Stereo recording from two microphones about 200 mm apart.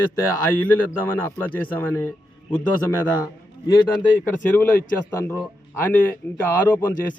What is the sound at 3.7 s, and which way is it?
Speech, 20° left (ahead or behind).